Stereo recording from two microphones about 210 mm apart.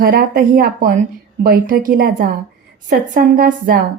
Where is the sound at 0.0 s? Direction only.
45° right (ahead or behind).